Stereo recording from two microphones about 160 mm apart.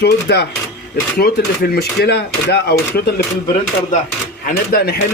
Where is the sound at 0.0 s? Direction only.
90° left.